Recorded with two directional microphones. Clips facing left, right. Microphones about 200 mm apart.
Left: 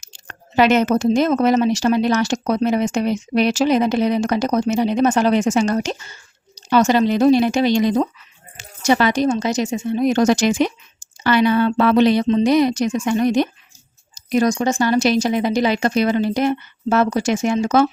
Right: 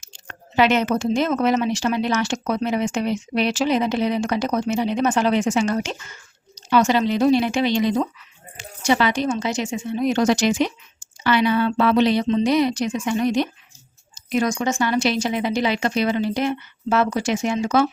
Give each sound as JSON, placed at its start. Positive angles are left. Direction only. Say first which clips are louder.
{"t": 0.0, "sound": "speech", "louder": "even", "side_deg": 40}